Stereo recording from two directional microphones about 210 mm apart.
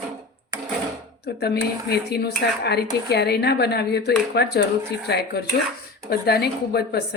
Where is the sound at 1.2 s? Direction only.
50° left (ahead or behind).